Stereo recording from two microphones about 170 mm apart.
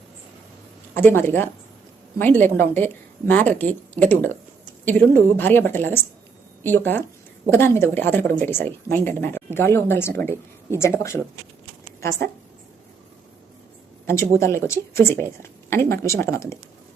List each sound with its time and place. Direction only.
0.9 s speech: 10° left (ahead or behind)
14.1 s speech: 15° left (ahead or behind)